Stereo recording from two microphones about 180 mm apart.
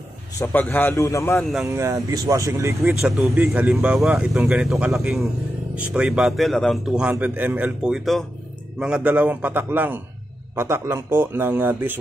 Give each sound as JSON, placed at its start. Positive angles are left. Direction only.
{"t": 0.4, "sound": "a man's voice", "side_deg": 10}
{"t": 1.4, "sound": "a man's voice", "side_deg": 0}
{"t": 1.7, "sound": "a man's voice", "side_deg": -15}
{"t": 3.0, "sound": "a man's voice", "side_deg": 0}